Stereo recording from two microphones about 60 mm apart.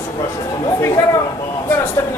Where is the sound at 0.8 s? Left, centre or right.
Left.